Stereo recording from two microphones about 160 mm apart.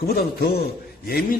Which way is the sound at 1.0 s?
65° left (ahead or behind).